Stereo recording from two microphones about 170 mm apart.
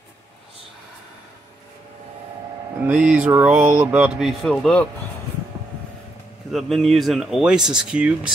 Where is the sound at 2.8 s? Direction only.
5° right (ahead or behind).